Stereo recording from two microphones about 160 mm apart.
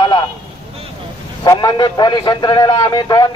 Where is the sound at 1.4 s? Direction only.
25° left (ahead or behind).